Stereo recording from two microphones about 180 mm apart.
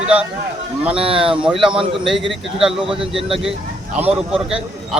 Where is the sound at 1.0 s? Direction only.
30° right (ahead or behind).